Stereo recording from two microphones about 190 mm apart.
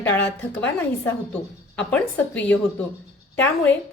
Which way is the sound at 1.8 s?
5° left (ahead or behind).